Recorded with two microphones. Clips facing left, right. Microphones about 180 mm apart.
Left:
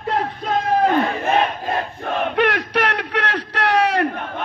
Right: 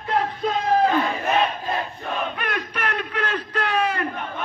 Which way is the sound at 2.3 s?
75° left (ahead or behind).